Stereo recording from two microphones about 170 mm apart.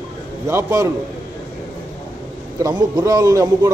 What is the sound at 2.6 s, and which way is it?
A man's voice, 20° right (ahead or behind).